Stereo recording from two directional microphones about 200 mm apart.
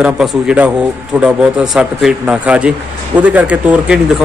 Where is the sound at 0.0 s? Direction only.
5° right (ahead or behind).